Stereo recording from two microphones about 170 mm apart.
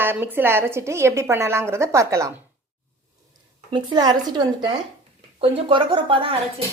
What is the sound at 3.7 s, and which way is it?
A woman's voice, 25° right (ahead or behind).